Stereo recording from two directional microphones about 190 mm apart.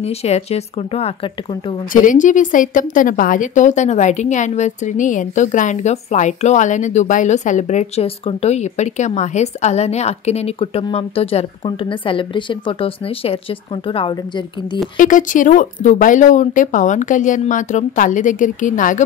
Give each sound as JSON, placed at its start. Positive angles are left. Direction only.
{"t": 0.0, "sound": "a woman's voice", "side_deg": 35}
{"t": 1.9, "sound": "a woman's voice", "side_deg": 45}
{"t": 15.0, "sound": "speech", "side_deg": 45}